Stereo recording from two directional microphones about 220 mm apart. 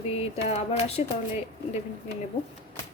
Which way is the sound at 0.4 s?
30° left (ahead or behind).